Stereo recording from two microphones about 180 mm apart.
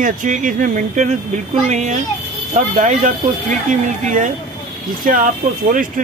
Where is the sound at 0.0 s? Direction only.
45° right (ahead or behind).